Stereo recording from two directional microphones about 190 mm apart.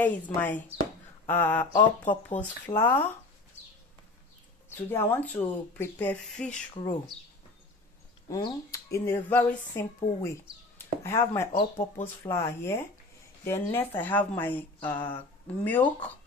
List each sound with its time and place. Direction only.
0.0 s speech: 10° left (ahead or behind)
4.6 s speech: 10° left (ahead or behind)
6.7 s speech: 25° left (ahead or behind)
8.3 s speech: 20° left (ahead or behind)